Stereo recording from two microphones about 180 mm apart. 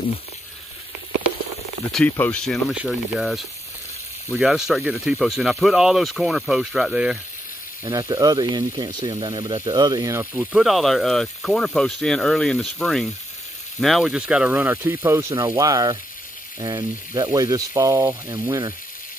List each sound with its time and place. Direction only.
1.9 s speech: 5° left (ahead or behind)
7.8 s speech: 20° right (ahead or behind)